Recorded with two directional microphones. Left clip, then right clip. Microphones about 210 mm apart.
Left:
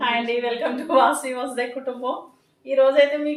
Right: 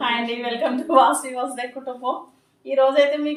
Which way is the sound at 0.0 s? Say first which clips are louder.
Left 1 dB; 15° left (ahead or behind).